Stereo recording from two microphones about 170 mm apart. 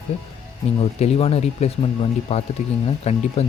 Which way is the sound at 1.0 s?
35° left (ahead or behind).